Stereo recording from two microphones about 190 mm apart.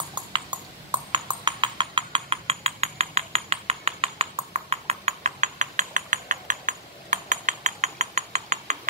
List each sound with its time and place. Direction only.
0.1 s horse: 25° right (ahead or behind)